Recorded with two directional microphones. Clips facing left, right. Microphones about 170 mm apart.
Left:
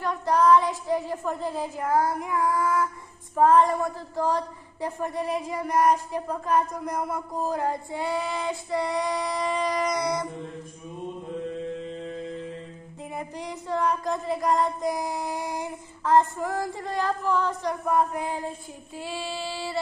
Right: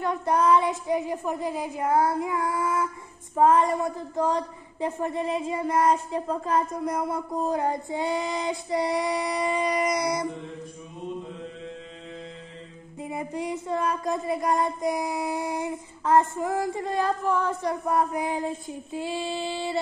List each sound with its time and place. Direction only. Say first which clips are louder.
0.0 s child singing: left 1 dB; 25° right (ahead or behind)
1.9 s a woman's voice: right 2 dB; 25° right (ahead or behind)
13.1 s a woman's voice: right 5 dB; 20° right (ahead or behind)